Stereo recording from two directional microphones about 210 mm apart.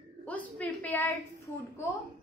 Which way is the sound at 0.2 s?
5° left (ahead or behind).